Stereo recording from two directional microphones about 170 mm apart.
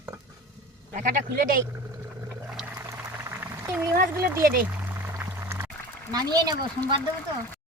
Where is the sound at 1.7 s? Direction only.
15° right (ahead or behind).